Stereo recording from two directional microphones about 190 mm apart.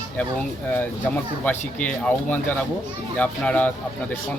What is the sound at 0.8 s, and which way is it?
Speech, 10° left (ahead or behind).